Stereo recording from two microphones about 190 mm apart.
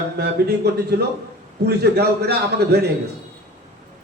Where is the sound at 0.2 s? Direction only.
55° right (ahead or behind).